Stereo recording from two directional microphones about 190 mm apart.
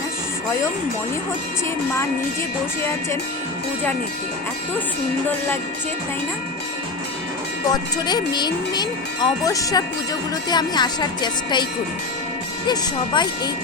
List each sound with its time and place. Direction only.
7.7 s speech: 20° left (ahead or behind)
12.6 s speech: 20° left (ahead or behind)